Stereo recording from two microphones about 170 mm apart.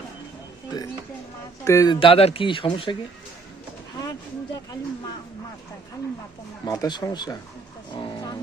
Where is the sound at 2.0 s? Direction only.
35° left (ahead or behind).